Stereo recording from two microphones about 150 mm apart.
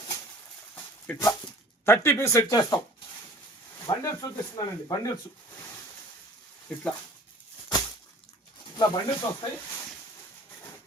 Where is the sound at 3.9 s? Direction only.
35° left (ahead or behind).